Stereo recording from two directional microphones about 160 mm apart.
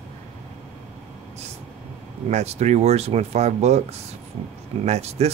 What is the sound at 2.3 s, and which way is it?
Speech, 40° right (ahead or behind).